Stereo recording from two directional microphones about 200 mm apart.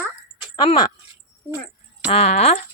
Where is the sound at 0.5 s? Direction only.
20° left (ahead or behind).